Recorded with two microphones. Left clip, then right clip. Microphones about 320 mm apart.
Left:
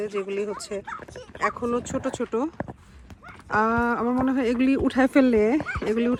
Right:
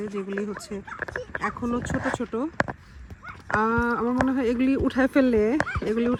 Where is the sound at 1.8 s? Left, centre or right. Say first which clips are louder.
Even; left.